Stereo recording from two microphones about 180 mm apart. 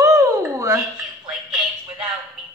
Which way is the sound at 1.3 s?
5° right (ahead or behind).